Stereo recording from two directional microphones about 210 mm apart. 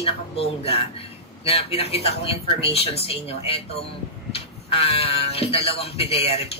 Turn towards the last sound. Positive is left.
turn(degrees=30)  # may be behind; listen again after turning